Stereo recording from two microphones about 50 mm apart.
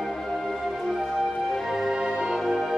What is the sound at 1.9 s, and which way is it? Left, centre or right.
Music, centre.